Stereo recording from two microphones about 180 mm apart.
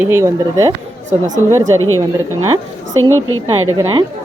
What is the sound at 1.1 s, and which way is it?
Speech, 45° right (ahead or behind).